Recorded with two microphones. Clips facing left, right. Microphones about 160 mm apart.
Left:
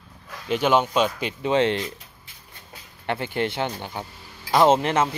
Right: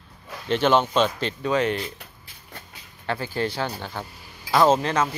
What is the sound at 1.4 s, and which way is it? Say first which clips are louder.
Speech: left 2 dB; 25° left (ahead or behind).